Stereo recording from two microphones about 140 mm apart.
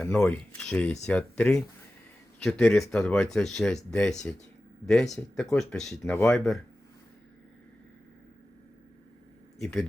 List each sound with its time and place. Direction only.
0.0 s speech: 5° left (ahead or behind)
9.6 s speech: centre (ahead or behind)